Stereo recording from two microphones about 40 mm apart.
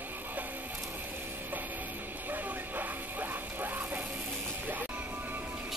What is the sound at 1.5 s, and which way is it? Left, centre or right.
Music, right.